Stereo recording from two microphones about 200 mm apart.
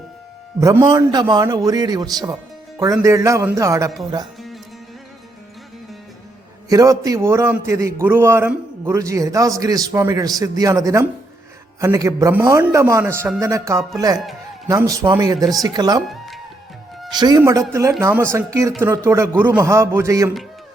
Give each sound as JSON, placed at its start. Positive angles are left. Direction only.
{"t": 0.6, "sound": "a man's voice", "side_deg": -15}
{"t": 6.7, "sound": "a man's voice", "side_deg": -15}
{"t": 17.1, "sound": "a man's voice", "side_deg": -20}